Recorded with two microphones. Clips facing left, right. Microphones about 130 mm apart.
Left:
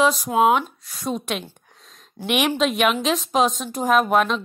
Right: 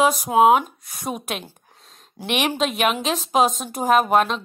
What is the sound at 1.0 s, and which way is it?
A woman's voice, 10° right (ahead or behind).